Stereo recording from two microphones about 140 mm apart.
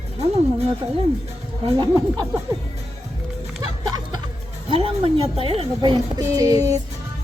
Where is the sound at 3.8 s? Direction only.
30° right (ahead or behind).